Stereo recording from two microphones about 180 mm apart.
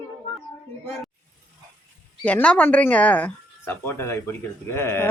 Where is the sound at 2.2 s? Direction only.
5° left (ahead or behind).